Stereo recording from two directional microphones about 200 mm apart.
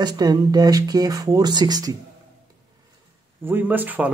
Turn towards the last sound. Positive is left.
turn(degrees=-10)  # may be behind; listen again after turning